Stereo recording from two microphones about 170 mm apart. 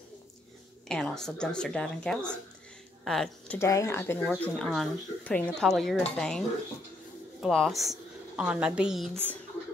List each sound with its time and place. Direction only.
0.8 s speech: 5° left (ahead or behind)
3.5 s speech: 15° left (ahead or behind)
4.4 s a woman's voice: 5° left (ahead or behind)